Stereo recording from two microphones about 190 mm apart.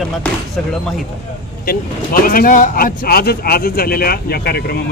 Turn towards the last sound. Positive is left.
turn(degrees=55)  # may be behind; listen again after turning